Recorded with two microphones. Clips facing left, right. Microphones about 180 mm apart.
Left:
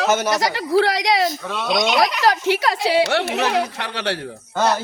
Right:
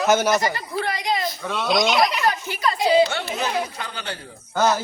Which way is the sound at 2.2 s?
85° left.